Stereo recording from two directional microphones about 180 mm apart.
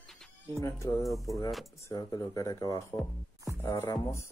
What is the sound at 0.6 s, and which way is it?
Speech, 15° left (ahead or behind).